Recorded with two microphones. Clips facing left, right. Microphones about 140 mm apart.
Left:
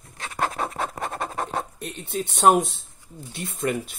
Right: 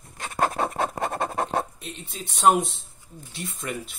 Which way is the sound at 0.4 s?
40° right (ahead or behind).